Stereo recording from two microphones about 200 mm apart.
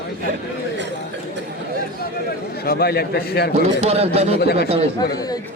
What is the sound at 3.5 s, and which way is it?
Speech, 30° right (ahead or behind).